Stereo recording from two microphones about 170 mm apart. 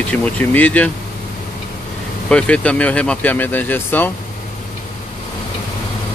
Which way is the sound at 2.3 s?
5° left (ahead or behind).